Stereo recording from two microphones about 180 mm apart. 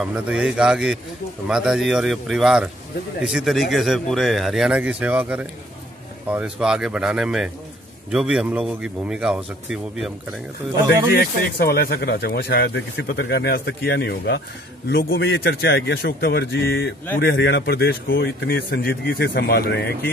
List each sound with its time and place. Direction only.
0.0 s speech: 5° right (ahead or behind)
11.1 s speech: 60° left (ahead or behind)